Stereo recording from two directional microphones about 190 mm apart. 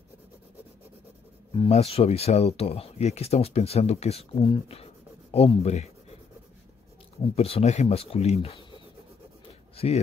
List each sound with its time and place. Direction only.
1.5 s speech: 30° left (ahead or behind)
7.3 s speech: 30° left (ahead or behind)